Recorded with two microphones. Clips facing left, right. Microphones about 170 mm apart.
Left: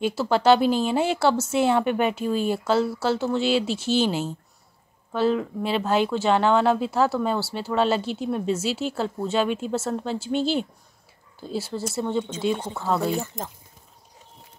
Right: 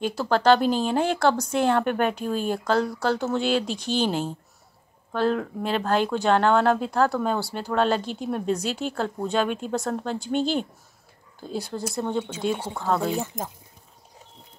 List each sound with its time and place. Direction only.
0.0 s speech: 5° left (ahead or behind)
12.8 s speech: 5° left (ahead or behind)